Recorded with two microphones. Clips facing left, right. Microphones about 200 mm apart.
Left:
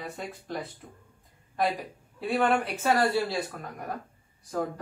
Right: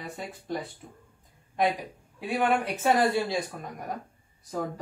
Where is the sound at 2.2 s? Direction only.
15° right (ahead or behind).